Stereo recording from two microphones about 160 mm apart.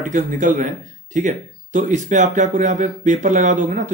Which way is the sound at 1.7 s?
50° right (ahead or behind).